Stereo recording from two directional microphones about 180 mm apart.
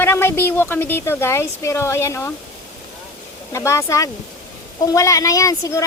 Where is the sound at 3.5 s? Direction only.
15° left (ahead or behind).